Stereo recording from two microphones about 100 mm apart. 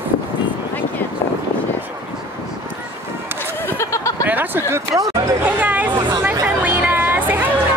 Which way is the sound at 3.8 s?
30° left (ahead or behind).